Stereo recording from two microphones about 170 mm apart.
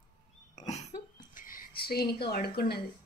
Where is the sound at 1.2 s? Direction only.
55° left (ahead or behind).